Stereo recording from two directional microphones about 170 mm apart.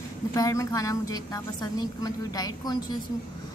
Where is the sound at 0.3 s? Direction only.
20° left (ahead or behind).